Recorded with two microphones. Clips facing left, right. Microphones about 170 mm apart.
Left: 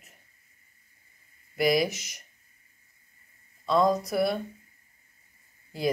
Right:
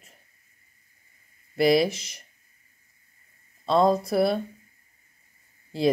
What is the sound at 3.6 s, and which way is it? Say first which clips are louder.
Speech: right 3 dB; 30° right (ahead or behind).